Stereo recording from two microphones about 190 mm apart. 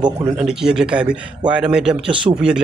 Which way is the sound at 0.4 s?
5° right (ahead or behind).